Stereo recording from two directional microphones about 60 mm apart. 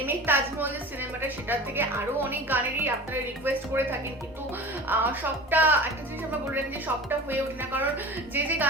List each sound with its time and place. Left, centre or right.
0.0 s a sound: right
1.5 s a woman's voice: right
4.9 s a woman's voice: right